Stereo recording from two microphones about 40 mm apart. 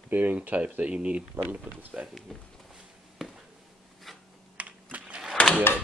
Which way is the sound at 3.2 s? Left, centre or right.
Centre.